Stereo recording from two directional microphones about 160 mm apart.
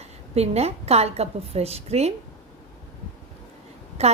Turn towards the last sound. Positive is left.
turn(degrees=-40)  # may be behind; listen again after turning